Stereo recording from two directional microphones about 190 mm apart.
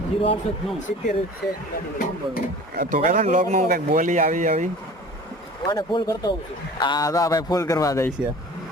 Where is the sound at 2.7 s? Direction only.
45° right (ahead or behind).